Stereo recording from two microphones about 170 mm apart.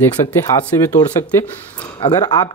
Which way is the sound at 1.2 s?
10° left (ahead or behind).